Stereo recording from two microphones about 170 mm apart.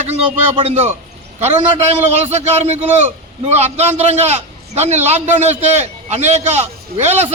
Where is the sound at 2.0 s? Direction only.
40° right (ahead or behind).